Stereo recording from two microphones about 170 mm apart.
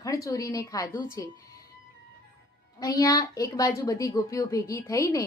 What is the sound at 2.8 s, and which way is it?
A woman's voice, 20° left (ahead or behind).